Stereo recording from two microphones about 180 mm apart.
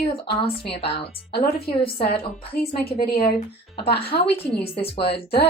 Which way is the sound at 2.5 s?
55° left (ahead or behind).